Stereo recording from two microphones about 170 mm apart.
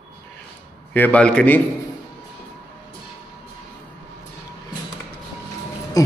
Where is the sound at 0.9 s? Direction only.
10° left (ahead or behind).